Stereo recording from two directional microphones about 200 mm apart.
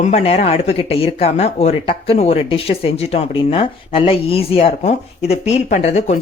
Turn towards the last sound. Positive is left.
turn(degrees=35)  # may be behind; listen again after turning